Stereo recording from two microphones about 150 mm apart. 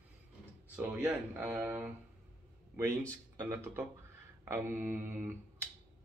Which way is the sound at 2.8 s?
20° right (ahead or behind).